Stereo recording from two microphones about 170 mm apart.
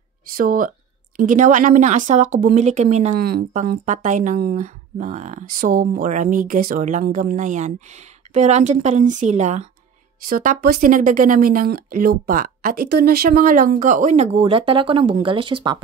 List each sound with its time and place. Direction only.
0.4 s speech: 55° right (ahead or behind)
3.2 s speech: 65° right (ahead or behind)
3.8 s speech: 45° right (ahead or behind); by 15.8 s 30° right (ahead or behind)